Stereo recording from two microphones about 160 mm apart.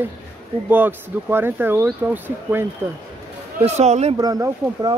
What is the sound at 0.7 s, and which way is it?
Speech, 10° right (ahead or behind).